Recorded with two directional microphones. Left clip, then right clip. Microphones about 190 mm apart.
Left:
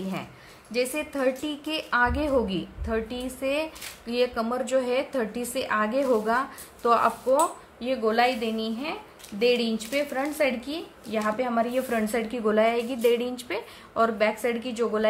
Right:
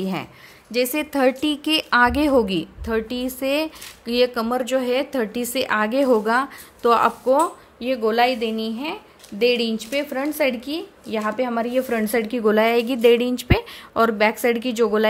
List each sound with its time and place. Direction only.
0.0 s speech: 50° right (ahead or behind)